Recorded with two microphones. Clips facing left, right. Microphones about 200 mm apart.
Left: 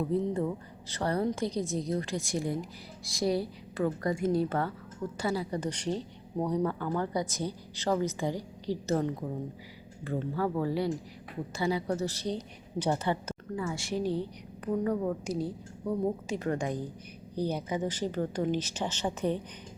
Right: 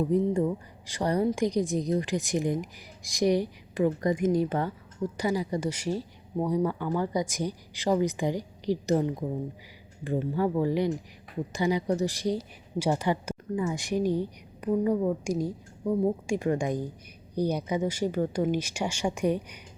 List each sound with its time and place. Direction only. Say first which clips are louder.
0.3 s a woman's voice: right 4 dB; 15° right (ahead or behind)